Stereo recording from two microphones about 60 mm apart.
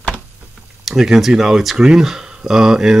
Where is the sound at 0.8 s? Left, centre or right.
Centre.